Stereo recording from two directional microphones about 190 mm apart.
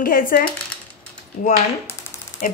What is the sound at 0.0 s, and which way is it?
Speech, 50° left (ahead or behind).